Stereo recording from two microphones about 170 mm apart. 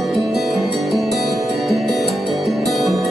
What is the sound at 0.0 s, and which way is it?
Music, centre (ahead or behind).